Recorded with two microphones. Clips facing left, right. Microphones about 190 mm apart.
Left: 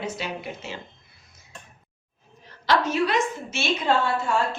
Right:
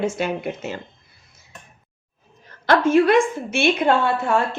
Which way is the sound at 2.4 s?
50° right (ahead or behind).